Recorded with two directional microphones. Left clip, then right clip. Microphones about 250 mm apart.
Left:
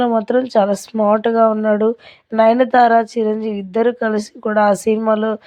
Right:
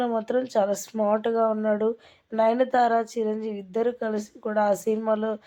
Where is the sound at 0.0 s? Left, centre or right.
Left.